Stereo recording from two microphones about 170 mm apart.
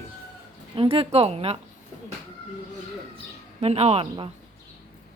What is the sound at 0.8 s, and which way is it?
Speech, 35° right (ahead or behind).